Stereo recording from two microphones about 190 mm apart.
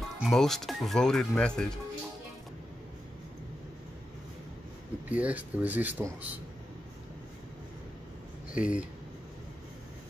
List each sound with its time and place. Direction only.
0.2 s speech: centre (ahead or behind)
5.1 s speech: 10° right (ahead or behind)
8.5 s speech: 5° right (ahead or behind)